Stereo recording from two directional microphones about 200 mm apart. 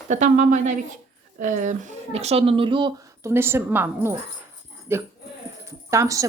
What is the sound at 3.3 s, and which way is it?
Speech, 10° right (ahead or behind).